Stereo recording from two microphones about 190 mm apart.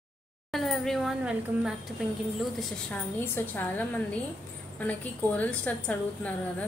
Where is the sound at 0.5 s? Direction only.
Centre (ahead or behind).